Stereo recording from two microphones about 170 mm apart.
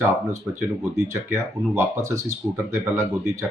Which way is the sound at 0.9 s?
15° right (ahead or behind).